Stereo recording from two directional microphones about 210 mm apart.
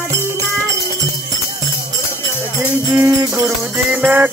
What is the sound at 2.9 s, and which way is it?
Music, 10° right (ahead or behind).